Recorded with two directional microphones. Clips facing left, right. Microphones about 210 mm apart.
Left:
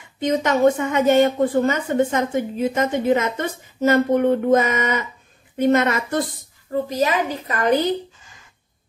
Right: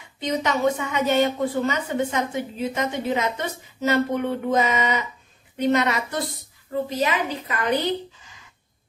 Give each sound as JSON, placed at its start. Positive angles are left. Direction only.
{"t": 0.2, "sound": "a woman's voice", "side_deg": 50}